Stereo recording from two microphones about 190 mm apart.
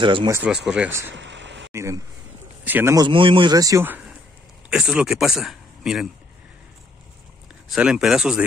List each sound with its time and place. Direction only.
0.0 s speech: 25° right (ahead or behind)
0.3 s speech: 10° right (ahead or behind)
1.1 s a sound: 70° right (ahead or behind)
1.7 s a sound: 15° right (ahead or behind)
2.6 s speech: 10° right (ahead or behind)
3.1 s speech: 25° right (ahead or behind); by 6.0 s centre (ahead or behind)
7.7 s speech: centre (ahead or behind)